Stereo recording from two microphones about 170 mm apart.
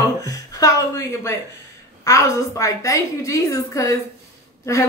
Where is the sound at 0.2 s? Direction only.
20° left (ahead or behind).